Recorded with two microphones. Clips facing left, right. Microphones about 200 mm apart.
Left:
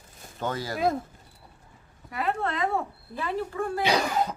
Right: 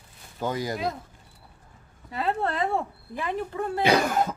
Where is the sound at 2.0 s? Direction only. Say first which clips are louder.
Right 1 dB; 30° right (ahead or behind).